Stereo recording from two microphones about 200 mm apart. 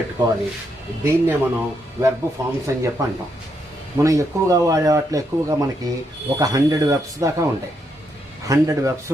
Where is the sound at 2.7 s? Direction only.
15° right (ahead or behind).